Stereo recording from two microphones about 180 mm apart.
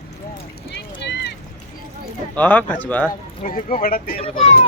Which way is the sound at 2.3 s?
10° left (ahead or behind).